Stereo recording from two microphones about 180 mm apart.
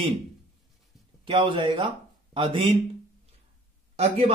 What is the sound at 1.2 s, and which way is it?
A man's voice, 30° right (ahead or behind).